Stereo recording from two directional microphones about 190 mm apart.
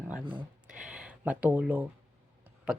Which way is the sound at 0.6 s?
5° right (ahead or behind).